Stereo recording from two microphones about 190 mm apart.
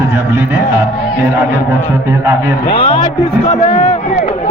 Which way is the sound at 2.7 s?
25° left (ahead or behind).